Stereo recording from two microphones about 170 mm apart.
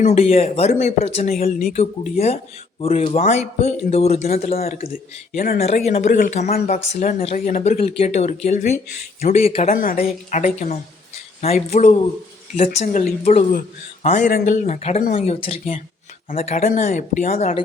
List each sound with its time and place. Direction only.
0.0 s a woman's voice: 40° left (ahead or behind)
9.6 s a woman's voice: 55° left (ahead or behind); by 17.6 s 40° left (ahead or behind)